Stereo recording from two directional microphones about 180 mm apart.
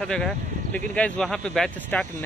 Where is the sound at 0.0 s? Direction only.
5° left (ahead or behind).